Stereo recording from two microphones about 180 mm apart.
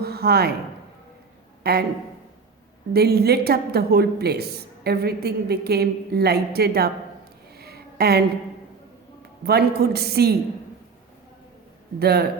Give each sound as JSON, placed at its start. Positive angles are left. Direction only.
{"t": 0.0, "sound": "a sound", "side_deg": -60}
{"t": 1.6, "sound": "a woman's voice", "side_deg": -60}
{"t": 2.9, "sound": "a woman's voice", "side_deg": -60}
{"t": 7.6, "sound": "a sound", "side_deg": -60}
{"t": 9.5, "sound": "a woman's voice", "side_deg": -60}
{"t": 11.9, "sound": "a woman's voice", "side_deg": -60}